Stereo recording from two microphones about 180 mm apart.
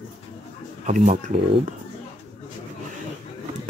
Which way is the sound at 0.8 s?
40° right (ahead or behind).